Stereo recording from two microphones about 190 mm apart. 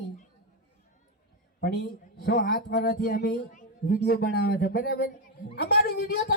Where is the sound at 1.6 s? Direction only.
60° left (ahead or behind).